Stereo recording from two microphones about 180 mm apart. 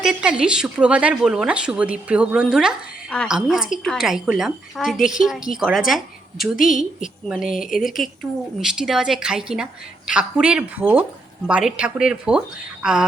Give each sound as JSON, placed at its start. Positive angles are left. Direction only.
{"t": 0.0, "sound": "speech", "side_deg": -5}
{"t": 6.6, "sound": "a woman's voice", "side_deg": 45}
{"t": 7.0, "sound": "speech", "side_deg": -5}